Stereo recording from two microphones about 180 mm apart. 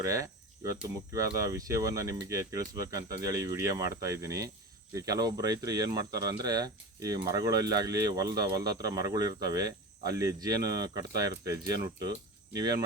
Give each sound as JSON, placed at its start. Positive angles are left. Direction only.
{"t": 0.0, "sound": "speech", "side_deg": -15}